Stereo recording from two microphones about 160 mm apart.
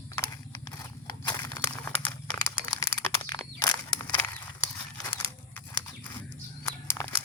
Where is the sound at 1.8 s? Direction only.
10° left (ahead or behind).